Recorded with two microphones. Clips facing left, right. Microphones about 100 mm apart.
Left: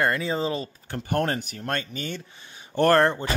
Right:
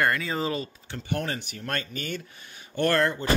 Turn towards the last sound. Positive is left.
turn(degrees=40)  # may be behind; listen again after turning